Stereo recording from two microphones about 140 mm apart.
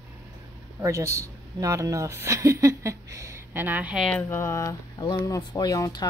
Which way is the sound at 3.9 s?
5° left (ahead or behind).